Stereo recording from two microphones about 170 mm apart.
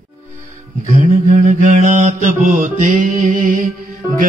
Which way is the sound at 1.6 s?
45° right (ahead or behind).